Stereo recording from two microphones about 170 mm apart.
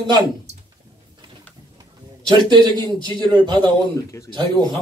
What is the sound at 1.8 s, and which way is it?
Bird, 25° right (ahead or behind).